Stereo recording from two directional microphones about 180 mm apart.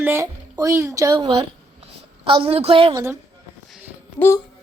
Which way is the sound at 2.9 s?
15° right (ahead or behind).